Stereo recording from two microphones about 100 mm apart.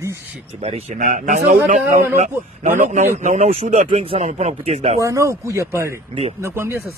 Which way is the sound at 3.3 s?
90° right.